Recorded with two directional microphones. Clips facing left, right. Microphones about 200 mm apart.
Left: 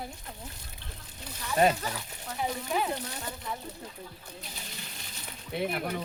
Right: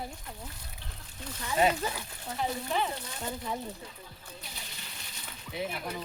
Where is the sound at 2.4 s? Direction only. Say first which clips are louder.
Left 1 dB; 5° left (ahead or behind).